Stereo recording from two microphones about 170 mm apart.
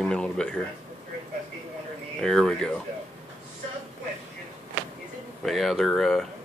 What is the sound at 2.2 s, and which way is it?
Speech, 5° left (ahead or behind).